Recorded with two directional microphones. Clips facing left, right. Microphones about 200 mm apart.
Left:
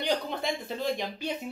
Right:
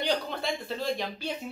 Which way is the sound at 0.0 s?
15° left (ahead or behind).